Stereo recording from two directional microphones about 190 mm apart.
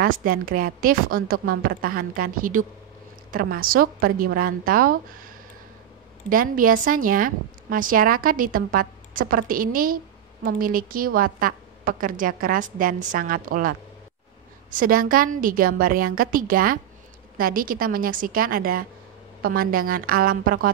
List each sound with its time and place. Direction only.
0.0 s a woman's voice: 50° right (ahead or behind)